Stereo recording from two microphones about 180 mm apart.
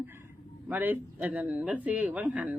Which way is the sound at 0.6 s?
10° right (ahead or behind).